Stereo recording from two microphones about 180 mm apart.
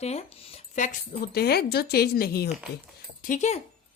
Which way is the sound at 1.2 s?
60° left (ahead or behind).